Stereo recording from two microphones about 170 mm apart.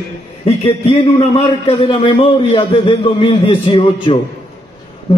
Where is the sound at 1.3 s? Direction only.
30° left (ahead or behind).